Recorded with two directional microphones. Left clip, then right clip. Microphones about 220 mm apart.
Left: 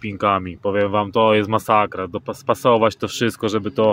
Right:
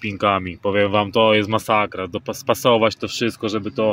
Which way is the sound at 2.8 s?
15° left (ahead or behind).